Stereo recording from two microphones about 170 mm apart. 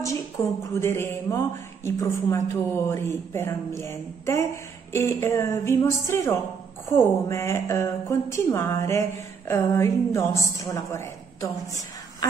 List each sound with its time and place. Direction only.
0.4 s a woman's voice: 15° left (ahead or behind)